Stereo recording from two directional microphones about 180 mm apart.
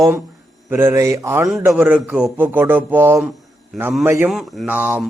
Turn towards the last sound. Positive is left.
turn(degrees=-5)  # may be behind; listen again after turning